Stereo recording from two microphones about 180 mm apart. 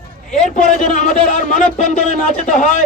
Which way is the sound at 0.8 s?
45° left (ahead or behind).